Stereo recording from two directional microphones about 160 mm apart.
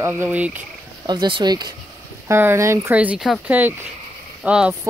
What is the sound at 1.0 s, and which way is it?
Speech, 25° right (ahead or behind).